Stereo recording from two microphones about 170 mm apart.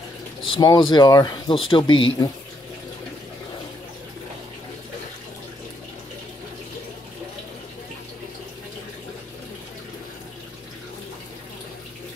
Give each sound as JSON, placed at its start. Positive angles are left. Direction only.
{"t": 0.5, "sound": "speech", "side_deg": 25}